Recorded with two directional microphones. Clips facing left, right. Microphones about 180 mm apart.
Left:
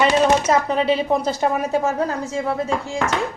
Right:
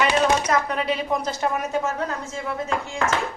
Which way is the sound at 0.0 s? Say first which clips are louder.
Left 4 dB; 25° left (ahead or behind).